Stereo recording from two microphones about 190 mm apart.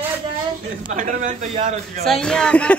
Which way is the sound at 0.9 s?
45° right (ahead or behind).